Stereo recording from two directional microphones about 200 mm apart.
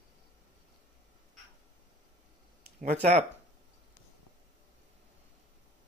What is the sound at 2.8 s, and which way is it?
Speech, 35° right (ahead or behind).